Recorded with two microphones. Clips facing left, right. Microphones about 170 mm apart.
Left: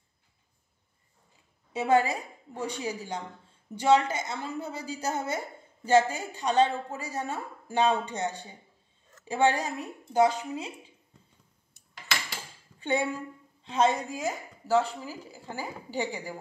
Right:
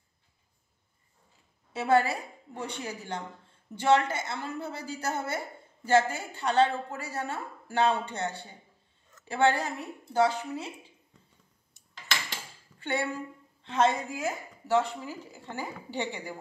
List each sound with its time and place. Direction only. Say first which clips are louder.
1.7 s a woman's voice: left 1 dB; 15° left (ahead or behind)
12.8 s a woman's voice: left 3 dB; 15° left (ahead or behind)